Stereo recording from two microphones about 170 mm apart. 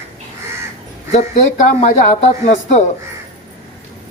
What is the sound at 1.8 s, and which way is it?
Speech, 40° left (ahead or behind).